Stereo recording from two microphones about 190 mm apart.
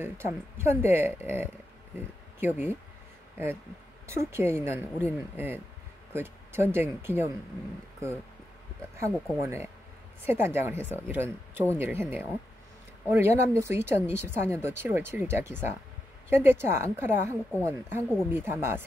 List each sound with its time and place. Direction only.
0.0 s a woman's voice: 10° right (ahead or behind)
4.1 s a woman's voice: 15° right (ahead or behind)
8.9 s a woman's voice: 15° right (ahead or behind)
10.8 s speech: 10° left (ahead or behind)
11.1 s a woman's voice: 10° right (ahead or behind)